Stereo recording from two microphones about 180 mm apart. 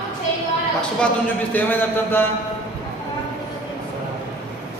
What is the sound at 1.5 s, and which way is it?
Speech, 10° left (ahead or behind).